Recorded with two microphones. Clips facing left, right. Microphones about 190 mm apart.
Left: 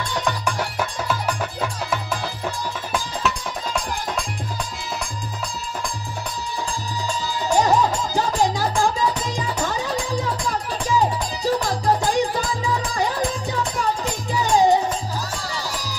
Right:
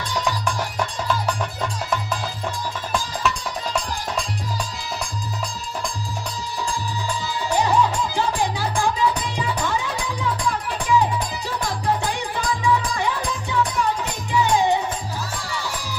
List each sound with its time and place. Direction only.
7.5 s music: 40° left (ahead or behind)